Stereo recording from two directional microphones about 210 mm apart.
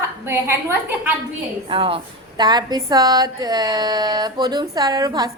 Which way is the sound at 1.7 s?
25° right (ahead or behind).